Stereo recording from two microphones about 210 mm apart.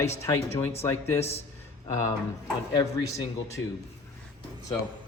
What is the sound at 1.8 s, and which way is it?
Speech, 15° left (ahead or behind).